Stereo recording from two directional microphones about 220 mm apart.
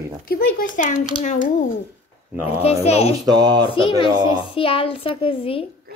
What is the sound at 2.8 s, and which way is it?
Speech, 30° left (ahead or behind).